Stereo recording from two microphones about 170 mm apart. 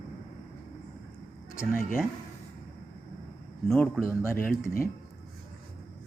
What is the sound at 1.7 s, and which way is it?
Speech, 55° left (ahead or behind).